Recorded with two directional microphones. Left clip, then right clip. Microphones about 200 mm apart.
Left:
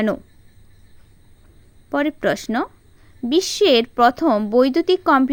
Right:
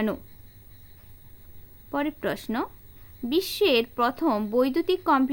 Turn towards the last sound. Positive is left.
turn(degrees=30)  # may be behind; listen again after turning